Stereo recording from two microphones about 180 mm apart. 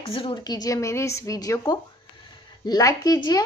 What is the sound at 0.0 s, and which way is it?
Speech, 30° left (ahead or behind).